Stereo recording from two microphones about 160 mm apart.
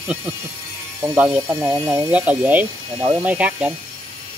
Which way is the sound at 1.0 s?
10° right (ahead or behind).